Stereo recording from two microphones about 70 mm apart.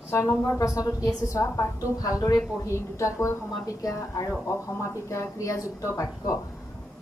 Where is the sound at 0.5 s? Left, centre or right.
Left.